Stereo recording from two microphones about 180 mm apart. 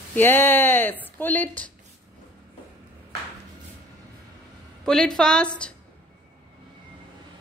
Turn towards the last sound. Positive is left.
turn(degrees=5)  # may be behind; listen again after turning